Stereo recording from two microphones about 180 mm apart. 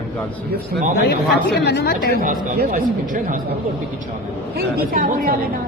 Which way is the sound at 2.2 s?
50° right (ahead or behind).